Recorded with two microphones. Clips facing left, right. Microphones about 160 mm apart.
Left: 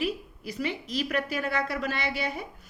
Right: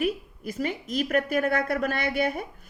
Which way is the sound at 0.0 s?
50° right (ahead or behind).